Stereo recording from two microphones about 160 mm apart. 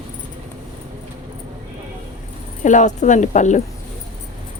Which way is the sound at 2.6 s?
50° left (ahead or behind).